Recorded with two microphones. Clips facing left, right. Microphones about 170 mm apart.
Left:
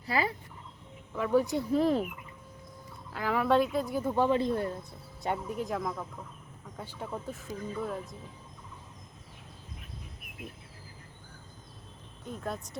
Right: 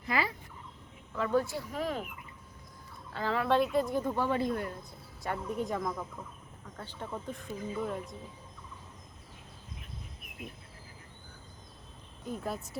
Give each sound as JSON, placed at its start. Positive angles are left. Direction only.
{"t": 0.0, "sound": "speech", "side_deg": 35}
{"t": 1.1, "sound": "speech", "side_deg": 10}
{"t": 1.5, "sound": "speech", "side_deg": 30}
{"t": 3.1, "sound": "speech", "side_deg": 10}
{"t": 4.4, "sound": "speech", "side_deg": 30}
{"t": 5.5, "sound": "speech", "side_deg": 0}
{"t": 7.4, "sound": "speech", "side_deg": -10}
{"t": 12.2, "sound": "speech", "side_deg": -5}